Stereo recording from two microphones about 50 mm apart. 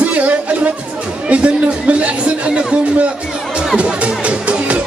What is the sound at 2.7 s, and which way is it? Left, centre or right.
Music, right.